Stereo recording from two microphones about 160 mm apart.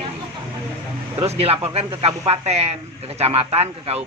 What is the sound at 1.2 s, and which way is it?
A man's voice, 40° right (ahead or behind).